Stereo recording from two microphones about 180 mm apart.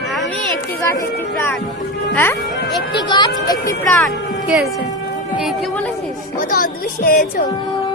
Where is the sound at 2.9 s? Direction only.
25° left (ahead or behind).